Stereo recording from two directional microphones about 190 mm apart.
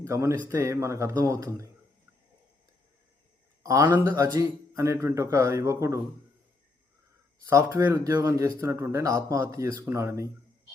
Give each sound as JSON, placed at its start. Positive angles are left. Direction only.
{"t": 0.0, "sound": "speech", "side_deg": -15}
{"t": 3.6, "sound": "speech", "side_deg": -15}
{"t": 7.4, "sound": "speech", "side_deg": -15}